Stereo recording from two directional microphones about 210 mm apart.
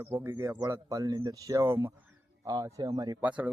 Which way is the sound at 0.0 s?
10° right (ahead or behind).